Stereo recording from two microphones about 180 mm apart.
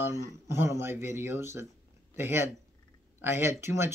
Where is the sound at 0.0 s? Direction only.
15° right (ahead or behind).